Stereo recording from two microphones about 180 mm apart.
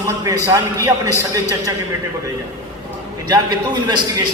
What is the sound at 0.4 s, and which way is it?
Speech, 20° right (ahead or behind).